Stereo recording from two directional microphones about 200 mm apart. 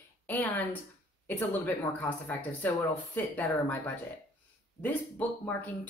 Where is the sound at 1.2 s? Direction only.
10° left (ahead or behind).